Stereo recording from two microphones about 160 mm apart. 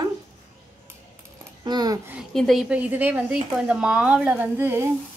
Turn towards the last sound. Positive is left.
turn(degrees=-15)  # may be behind; listen again after turning